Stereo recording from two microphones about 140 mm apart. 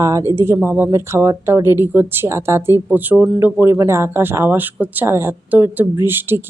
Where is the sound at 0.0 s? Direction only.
20° right (ahead or behind).